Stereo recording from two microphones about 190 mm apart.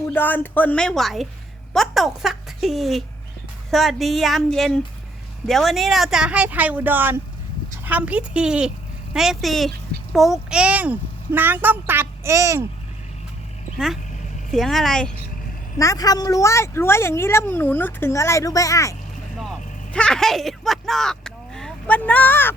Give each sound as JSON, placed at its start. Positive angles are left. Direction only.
{"t": 0.1, "sound": "a woman's voice", "side_deg": 10}
{"t": 13.7, "sound": "speech", "side_deg": 0}
{"t": 15.8, "sound": "speech", "side_deg": 20}
{"t": 19.4, "sound": "a sound", "side_deg": 5}